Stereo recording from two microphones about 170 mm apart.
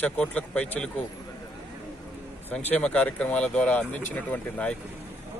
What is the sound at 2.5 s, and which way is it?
Speech, 5° left (ahead or behind).